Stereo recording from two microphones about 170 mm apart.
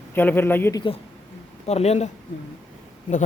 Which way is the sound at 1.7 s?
40° left (ahead or behind).